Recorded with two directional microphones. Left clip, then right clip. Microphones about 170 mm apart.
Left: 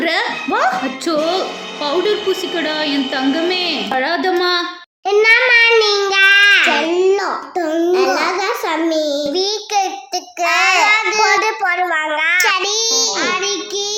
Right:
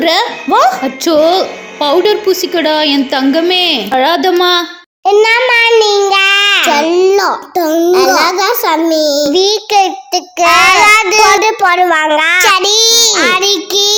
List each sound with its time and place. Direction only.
0.0 s a child's voice: 35° right (ahead or behind)
5.0 s child singing: 30° right (ahead or behind)
6.7 s a child's voice: 50° right (ahead or behind)